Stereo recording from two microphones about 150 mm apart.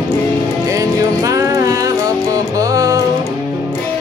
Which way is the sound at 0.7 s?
20° right (ahead or behind).